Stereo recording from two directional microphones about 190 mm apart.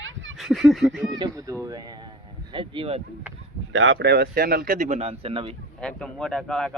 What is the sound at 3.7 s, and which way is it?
Speech, 90° right.